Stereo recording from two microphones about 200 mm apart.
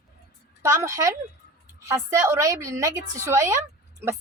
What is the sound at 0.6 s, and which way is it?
A woman's voice, 15° right (ahead or behind).